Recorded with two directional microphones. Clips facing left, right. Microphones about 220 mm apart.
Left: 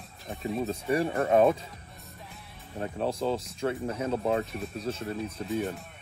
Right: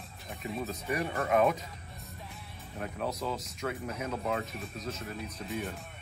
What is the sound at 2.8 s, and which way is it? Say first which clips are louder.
Speech: left 5 dB; 30° left (ahead or behind).